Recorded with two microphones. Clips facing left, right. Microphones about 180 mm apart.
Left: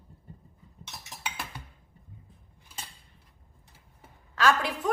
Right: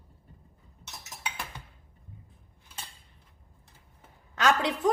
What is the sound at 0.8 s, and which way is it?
Cutlery, centre (ahead or behind).